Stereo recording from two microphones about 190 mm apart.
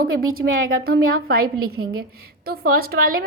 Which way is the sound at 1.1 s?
50° right (ahead or behind).